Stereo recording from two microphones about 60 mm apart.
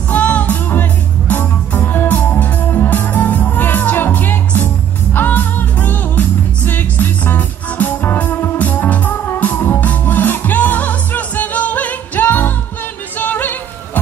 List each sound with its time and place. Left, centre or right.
0.1 s music: left